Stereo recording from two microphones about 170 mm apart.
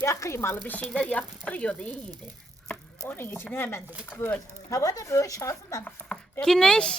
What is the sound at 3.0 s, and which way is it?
Speech, 10° left (ahead or behind).